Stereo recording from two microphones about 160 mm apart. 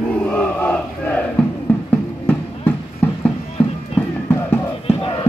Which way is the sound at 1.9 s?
10° left (ahead or behind).